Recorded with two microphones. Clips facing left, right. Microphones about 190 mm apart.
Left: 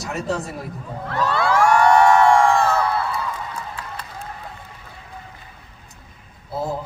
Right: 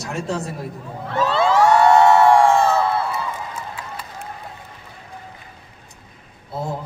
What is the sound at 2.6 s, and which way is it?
Crowd, 20° right (ahead or behind).